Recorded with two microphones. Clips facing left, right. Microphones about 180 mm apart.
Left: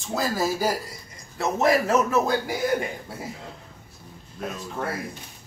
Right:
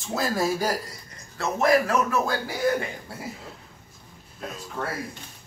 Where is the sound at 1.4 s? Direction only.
20° left (ahead or behind).